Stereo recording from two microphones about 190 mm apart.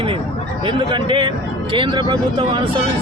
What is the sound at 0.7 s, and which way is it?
Speech, 25° right (ahead or behind).